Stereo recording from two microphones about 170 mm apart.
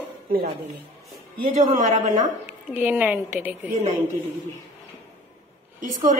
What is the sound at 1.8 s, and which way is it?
Speech, 45° right (ahead or behind).